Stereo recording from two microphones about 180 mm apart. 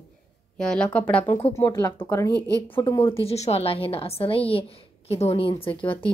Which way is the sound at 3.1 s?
35° left (ahead or behind).